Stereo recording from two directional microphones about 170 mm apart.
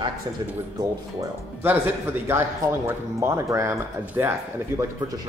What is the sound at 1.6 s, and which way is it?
Speech, 10° right (ahead or behind).